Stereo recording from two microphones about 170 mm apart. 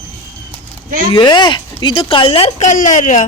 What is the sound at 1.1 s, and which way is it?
Speech, 25° left (ahead or behind).